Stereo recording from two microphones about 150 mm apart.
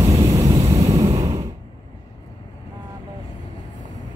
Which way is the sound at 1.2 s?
25° right (ahead or behind).